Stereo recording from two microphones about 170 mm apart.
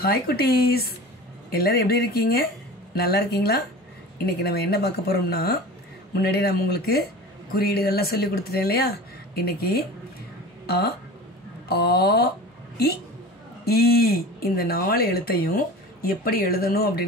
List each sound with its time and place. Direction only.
0.0 s speech: 65° left (ahead or behind)
13.7 s speech: 65° left (ahead or behind)